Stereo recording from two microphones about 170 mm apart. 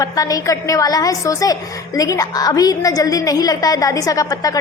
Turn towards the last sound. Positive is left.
turn(degrees=20)  # may be behind; listen again after turning